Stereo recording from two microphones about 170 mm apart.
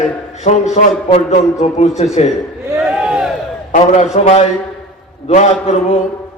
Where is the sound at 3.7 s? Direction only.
45° left (ahead or behind).